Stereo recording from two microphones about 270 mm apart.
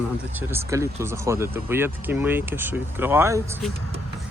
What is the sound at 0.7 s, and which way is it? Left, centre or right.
Speech, centre.